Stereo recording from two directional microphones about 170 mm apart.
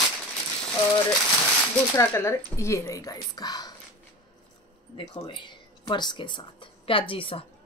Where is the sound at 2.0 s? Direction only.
15° left (ahead or behind).